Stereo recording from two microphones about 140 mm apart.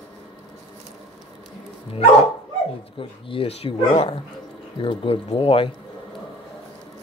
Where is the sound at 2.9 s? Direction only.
40° left (ahead or behind).